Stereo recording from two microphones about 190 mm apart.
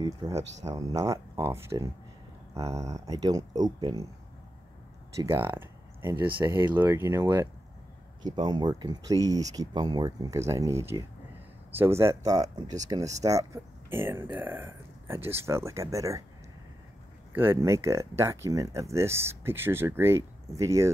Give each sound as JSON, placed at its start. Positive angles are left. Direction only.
{"t": 0.2, "sound": "speech", "side_deg": -15}
{"t": 5.1, "sound": "speech", "side_deg": -15}
{"t": 17.3, "sound": "speech", "side_deg": -10}